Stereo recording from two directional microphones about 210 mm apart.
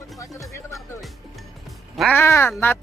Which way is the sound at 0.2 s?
15° left (ahead or behind).